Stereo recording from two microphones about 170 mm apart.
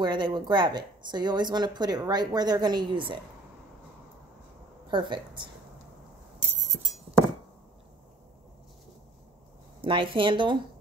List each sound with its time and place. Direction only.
0.0 s speech: 25° right (ahead or behind)
4.9 s speech: 30° right (ahead or behind)
6.7 s music: 35° right (ahead or behind)
9.8 s speech: 30° right (ahead or behind)